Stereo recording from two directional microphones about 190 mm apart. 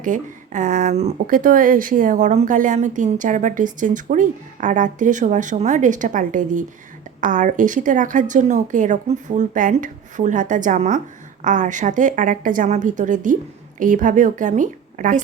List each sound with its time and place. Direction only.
0.0 s a woman's voice: 40° right (ahead or behind)